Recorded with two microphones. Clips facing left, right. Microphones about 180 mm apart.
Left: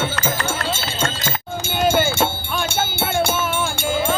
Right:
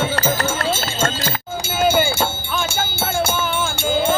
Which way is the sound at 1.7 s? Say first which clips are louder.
Right 1 dB; 5° right (ahead or behind).